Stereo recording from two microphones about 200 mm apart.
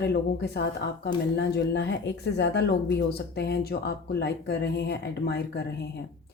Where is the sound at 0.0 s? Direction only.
55° left (ahead or behind).